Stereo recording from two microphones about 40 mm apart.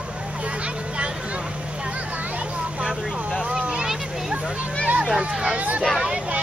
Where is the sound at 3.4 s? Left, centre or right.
Right.